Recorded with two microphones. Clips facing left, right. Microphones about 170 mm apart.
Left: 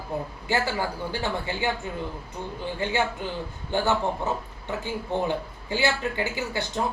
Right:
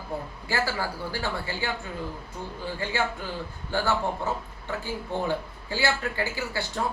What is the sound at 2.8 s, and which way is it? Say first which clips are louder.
Speech: left 3 dB; 20° left (ahead or behind).